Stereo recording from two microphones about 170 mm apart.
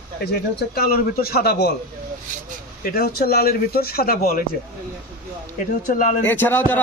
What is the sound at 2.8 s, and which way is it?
Speech, 60° left (ahead or behind).